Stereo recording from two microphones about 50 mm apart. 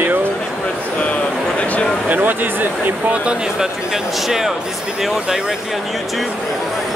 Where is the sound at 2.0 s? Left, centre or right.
Right.